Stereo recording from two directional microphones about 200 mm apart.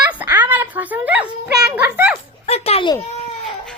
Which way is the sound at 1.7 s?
10° right (ahead or behind).